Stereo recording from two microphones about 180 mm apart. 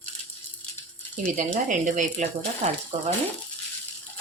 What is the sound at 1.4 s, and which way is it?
Speech, 45° right (ahead or behind).